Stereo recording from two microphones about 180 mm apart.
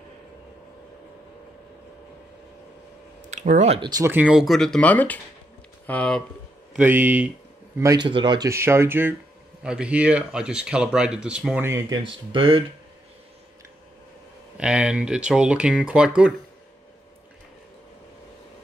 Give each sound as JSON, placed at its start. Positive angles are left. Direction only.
{"t": 3.3, "sound": "speech", "side_deg": -40}
{"t": 3.9, "sound": "speech", "side_deg": -15}
{"t": 6.8, "sound": "speech", "side_deg": -10}
{"t": 7.8, "sound": "speech", "side_deg": -20}
{"t": 12.3, "sound": "speech", "side_deg": -30}
{"t": 14.6, "sound": "speech", "side_deg": -5}